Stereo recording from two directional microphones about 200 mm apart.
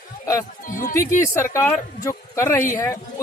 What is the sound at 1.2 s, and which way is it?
A man's voice, 15° left (ahead or behind).